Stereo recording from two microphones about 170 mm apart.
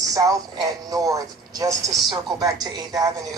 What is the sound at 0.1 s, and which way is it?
Speech, 20° right (ahead or behind).